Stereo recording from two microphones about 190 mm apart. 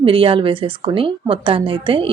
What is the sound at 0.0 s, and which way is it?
A woman's voice, 30° right (ahead or behind).